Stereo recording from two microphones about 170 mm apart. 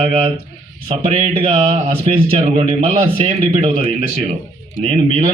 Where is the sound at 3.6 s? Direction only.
35° right (ahead or behind).